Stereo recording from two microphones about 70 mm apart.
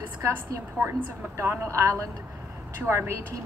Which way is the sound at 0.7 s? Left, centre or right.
Right.